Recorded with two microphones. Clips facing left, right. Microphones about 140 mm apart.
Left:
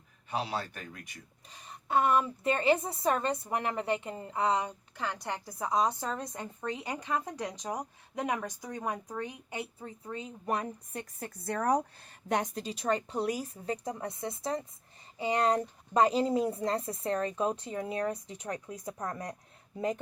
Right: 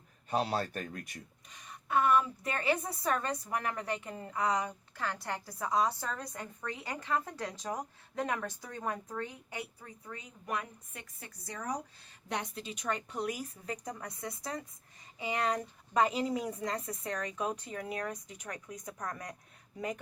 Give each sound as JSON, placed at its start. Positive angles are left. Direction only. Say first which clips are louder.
{"t": 0.3, "sound": "speech", "louder": "right 2 dB", "side_deg": -45}
{"t": 1.5, "sound": "a woman's voice", "louder": "left 3 dB", "side_deg": 30}
{"t": 11.3, "sound": "speech", "louder": "left 10 dB", "side_deg": 60}
{"t": 12.3, "sound": "a woman's voice", "louder": "left 6 dB", "side_deg": 45}